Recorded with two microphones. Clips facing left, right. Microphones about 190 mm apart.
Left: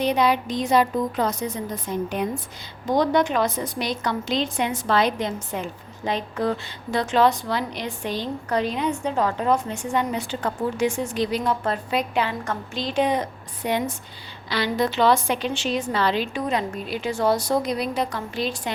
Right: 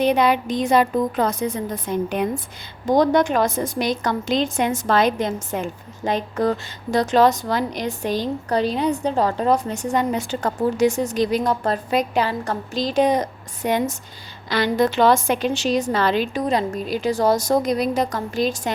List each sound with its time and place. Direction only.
0.0 s a woman's voice: 55° right (ahead or behind)